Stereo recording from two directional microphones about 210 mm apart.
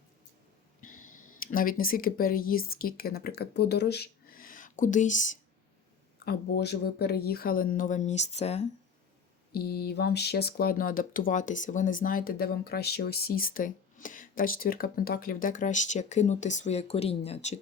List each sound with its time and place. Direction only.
0.8 s speech: 40° left (ahead or behind)
6.2 s speech: 50° left (ahead or behind); by 8.6 s 30° left (ahead or behind)
9.5 s speech: 45° left (ahead or behind); by 17.5 s 30° left (ahead or behind)